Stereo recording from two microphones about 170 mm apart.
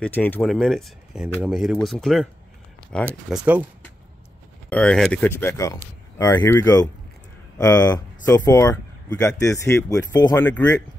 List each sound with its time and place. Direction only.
0.0 s speech: 10° left (ahead or behind)
4.6 s speech: 5° left (ahead or behind)